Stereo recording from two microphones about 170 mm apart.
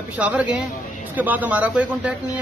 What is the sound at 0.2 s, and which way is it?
A man's voice, 10° right (ahead or behind).